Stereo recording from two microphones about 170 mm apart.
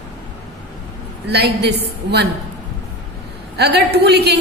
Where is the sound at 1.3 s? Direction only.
75° right (ahead or behind).